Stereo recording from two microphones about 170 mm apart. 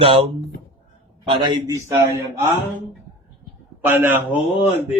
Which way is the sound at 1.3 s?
25° right (ahead or behind).